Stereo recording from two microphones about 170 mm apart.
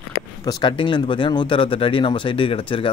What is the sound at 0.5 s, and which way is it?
Speech, 25° left (ahead or behind).